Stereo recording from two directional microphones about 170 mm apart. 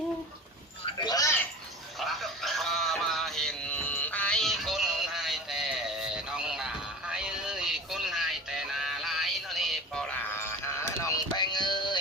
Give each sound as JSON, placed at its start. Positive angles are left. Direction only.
{"t": 0.9, "sound": "a sound", "side_deg": 25}
{"t": 2.0, "sound": "music", "side_deg": 0}
{"t": 10.3, "sound": "music", "side_deg": 15}